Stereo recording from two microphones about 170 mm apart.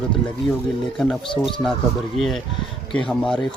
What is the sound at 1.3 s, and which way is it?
Speech, 30° left (ahead or behind).